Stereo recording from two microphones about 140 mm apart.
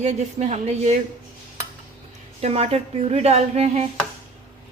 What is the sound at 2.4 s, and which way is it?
A woman's voice, 50° right (ahead or behind).